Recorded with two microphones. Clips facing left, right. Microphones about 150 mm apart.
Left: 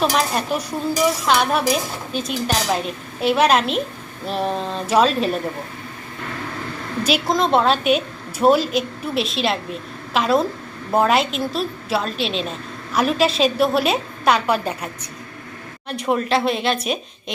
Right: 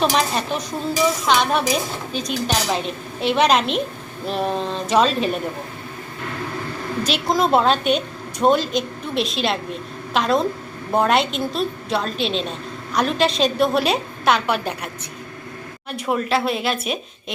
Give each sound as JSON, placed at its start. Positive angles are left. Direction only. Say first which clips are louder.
{"t": 0.0, "sound": "a woman's voice", "louder": "even", "side_deg": 5}
{"t": 7.0, "sound": "a woman's voice", "louder": "left 1 dB", "side_deg": 5}
{"t": 15.9, "sound": "a woman's voice", "louder": "left 2 dB", "side_deg": -5}